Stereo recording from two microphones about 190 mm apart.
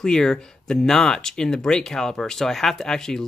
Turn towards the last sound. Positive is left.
turn(degrees=5)  # may be behind; listen again after turning